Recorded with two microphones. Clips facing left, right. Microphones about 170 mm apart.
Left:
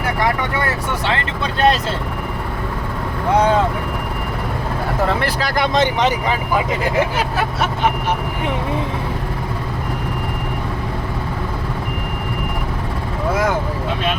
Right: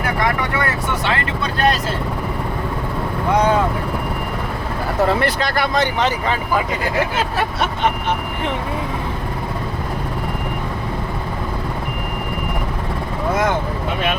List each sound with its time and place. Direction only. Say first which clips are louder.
1.5 s vehicle: left 3 dB; 25° left (ahead or behind)
5.0 s speech: right 3 dB; 5° left (ahead or behind)
5.5 s speech: left 4 dB; 20° left (ahead or behind)